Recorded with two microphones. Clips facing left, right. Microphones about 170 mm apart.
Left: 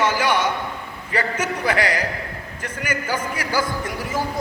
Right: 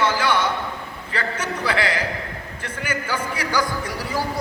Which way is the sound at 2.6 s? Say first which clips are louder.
Left 1 dB; 10° left (ahead or behind).